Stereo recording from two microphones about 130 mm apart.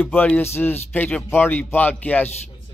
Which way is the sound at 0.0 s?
15° left (ahead or behind).